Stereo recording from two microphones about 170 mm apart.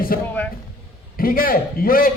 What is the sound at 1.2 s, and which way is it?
Speech, 55° left (ahead or behind).